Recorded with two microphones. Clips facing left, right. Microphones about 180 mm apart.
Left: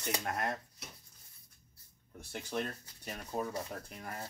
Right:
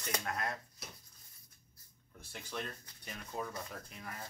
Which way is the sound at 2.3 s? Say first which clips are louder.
Left 5 dB; 45° left (ahead or behind).